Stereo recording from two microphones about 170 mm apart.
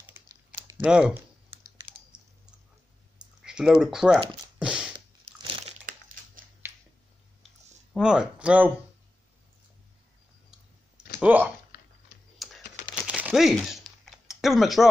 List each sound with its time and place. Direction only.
0.0 s typing: 10° right (ahead or behind)
0.8 s speech: 5° right (ahead or behind)
1.9 s typing: 30° right (ahead or behind)
3.2 s typing: 5° right (ahead or behind)
3.8 s speech: 5° right (ahead or behind)
4.6 s a sound: 5° right (ahead or behind)
4.9 s crumpling: 30° right (ahead or behind)
7.9 s speech: 5° right (ahead or behind)
11.1 s speech: 10° right (ahead or behind)
11.7 s a sound: 65° left (ahead or behind)
12.4 s computer keyboard: centre (ahead or behind)
13.0 s a sound: 5° right (ahead or behind)